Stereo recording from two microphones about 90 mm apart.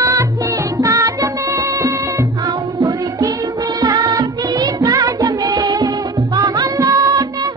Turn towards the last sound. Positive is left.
turn(degrees=-40)  # may be behind; listen again after turning